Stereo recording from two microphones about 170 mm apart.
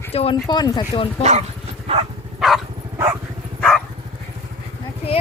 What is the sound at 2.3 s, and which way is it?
Dog, centre (ahead or behind).